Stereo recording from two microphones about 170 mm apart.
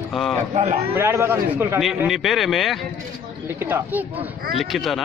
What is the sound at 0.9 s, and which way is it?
Speech, 15° right (ahead or behind).